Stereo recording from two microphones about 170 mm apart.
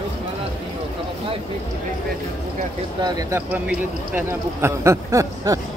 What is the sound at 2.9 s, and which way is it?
Speech, 20° right (ahead or behind).